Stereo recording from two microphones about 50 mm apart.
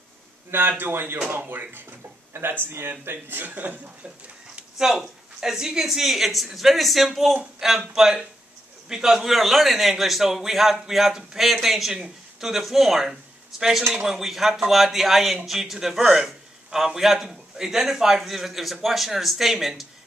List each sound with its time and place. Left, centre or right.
0.5 s speech: right
4.7 s a man's voice: centre